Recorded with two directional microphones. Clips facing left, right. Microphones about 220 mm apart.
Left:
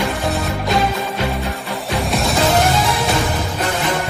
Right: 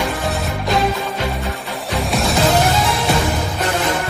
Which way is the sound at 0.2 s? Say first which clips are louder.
Left 1 dB; centre (ahead or behind).